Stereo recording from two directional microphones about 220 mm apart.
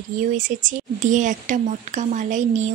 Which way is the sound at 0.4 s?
35° right (ahead or behind).